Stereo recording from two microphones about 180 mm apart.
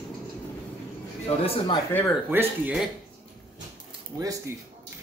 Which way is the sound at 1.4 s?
30° left (ahead or behind).